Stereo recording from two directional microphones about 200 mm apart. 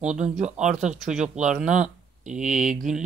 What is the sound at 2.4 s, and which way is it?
Speech, 40° right (ahead or behind).